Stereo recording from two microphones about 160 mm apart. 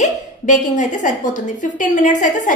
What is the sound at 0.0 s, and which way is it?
A woman's voice, 50° left (ahead or behind).